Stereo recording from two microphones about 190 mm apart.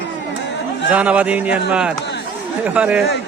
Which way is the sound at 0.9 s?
5° right (ahead or behind).